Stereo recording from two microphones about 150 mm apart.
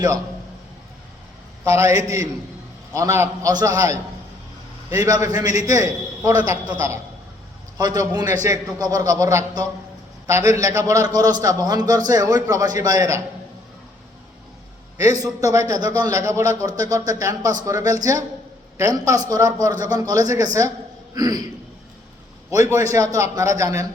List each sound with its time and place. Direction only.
1.6 s a man's voice: 20° right (ahead or behind)
14.9 s a man's voice: 20° right (ahead or behind)
22.4 s a man's voice: 20° right (ahead or behind)